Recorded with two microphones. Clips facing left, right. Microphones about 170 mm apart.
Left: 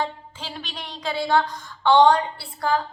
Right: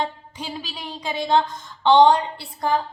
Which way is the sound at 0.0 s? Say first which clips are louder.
Right 1 dB; 15° right (ahead or behind).